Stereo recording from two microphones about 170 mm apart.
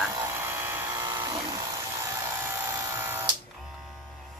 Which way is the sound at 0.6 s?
15° right (ahead or behind).